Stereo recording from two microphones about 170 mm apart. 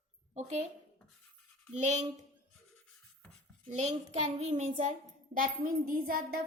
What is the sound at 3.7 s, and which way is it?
A child's voice, 40° right (ahead or behind).